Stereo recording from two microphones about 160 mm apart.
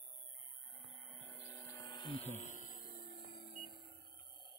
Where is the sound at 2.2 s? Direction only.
45° left (ahead or behind); by 3.2 s 70° left (ahead or behind).